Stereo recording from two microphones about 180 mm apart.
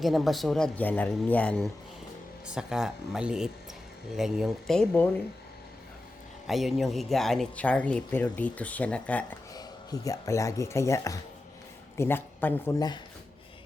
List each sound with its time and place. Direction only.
0.0 s speech: centre (ahead or behind)
2.5 s speech: 5° right (ahead or behind)
6.5 s speech: centre (ahead or behind)
9.6 s speech: 20° left (ahead or behind)